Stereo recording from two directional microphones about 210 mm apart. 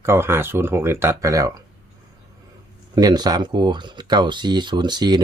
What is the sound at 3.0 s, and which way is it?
Speech, 20° right (ahead or behind).